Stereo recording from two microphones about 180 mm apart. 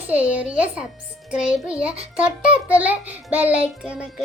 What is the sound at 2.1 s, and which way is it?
Child singing, 5° right (ahead or behind).